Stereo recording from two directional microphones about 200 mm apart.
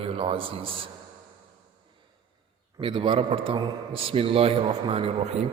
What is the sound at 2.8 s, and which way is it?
Mantra, 25° right (ahead or behind).